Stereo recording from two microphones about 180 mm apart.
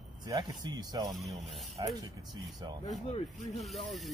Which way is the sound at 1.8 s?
25° right (ahead or behind).